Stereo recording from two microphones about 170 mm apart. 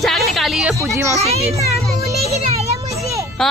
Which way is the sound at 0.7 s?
15° right (ahead or behind).